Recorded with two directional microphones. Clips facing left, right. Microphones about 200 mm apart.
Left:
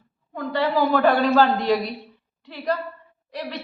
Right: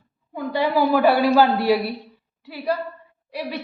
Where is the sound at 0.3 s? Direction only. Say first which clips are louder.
Right 1 dB; 10° right (ahead or behind).